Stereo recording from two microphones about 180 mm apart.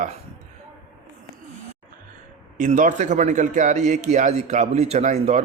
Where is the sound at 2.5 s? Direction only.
45° right (ahead or behind).